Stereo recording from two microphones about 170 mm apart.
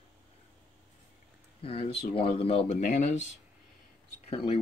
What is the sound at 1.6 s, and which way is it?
Speech, 35° left (ahead or behind).